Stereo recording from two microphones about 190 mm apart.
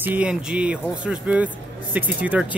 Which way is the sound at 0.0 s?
10° right (ahead or behind).